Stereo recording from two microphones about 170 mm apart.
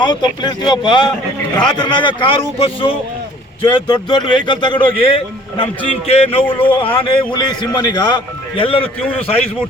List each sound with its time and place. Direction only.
0.0 s a man's voice: 25° left (ahead or behind)